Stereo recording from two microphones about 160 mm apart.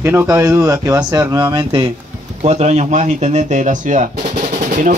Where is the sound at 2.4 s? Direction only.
45° right (ahead or behind).